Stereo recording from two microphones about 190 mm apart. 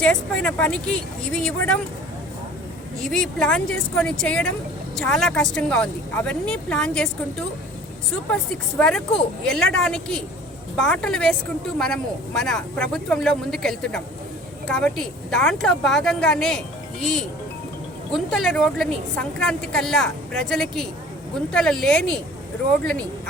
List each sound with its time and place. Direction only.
0.0 s a woman's voice: 5° left (ahead or behind)
3.0 s a woman's voice: 5° left (ahead or behind)
9.5 s a woman's voice: 5° left (ahead or behind)